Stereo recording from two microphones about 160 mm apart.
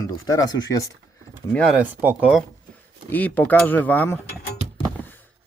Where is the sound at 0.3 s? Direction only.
20° left (ahead or behind).